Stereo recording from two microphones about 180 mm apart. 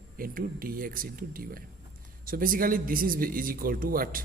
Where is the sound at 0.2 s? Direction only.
50° right (ahead or behind).